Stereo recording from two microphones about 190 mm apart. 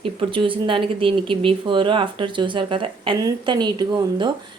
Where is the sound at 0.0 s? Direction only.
25° right (ahead or behind).